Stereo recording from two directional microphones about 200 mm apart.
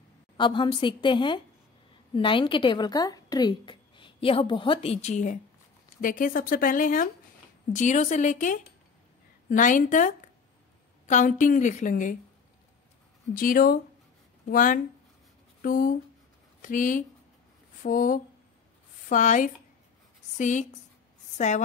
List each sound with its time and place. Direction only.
0.4 s a woman's voice: 25° left (ahead or behind); by 8.5 s 40° left (ahead or behind)
9.6 s a woman's voice: 40° left (ahead or behind)
13.3 s a woman's voice: 45° left (ahead or behind)